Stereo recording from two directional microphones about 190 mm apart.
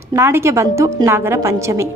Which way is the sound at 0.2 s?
15° right (ahead or behind).